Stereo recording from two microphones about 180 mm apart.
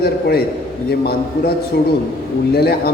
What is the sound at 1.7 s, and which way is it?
A man's voice, 65° left (ahead or behind).